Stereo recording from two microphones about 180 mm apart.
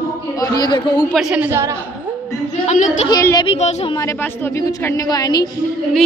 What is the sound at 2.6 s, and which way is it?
Speech, 40° left (ahead or behind).